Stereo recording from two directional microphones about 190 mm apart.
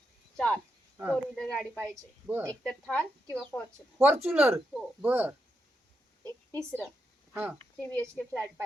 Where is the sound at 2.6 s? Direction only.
5° left (ahead or behind).